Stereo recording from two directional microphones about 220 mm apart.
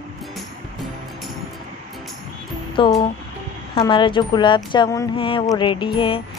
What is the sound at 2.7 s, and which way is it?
A woman's voice, 20° left (ahead or behind).